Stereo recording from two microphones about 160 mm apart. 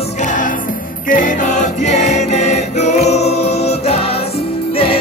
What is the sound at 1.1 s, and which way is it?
Music, 55° left (ahead or behind).